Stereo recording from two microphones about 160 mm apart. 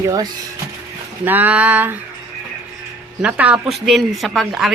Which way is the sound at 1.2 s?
10° right (ahead or behind).